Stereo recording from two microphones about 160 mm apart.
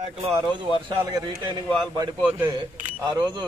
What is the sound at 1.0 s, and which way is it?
Speech, 25° right (ahead or behind).